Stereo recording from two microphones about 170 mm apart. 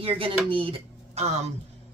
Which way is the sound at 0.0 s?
30° right (ahead or behind).